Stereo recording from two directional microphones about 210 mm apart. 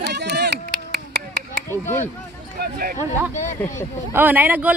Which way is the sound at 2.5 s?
45° right (ahead or behind).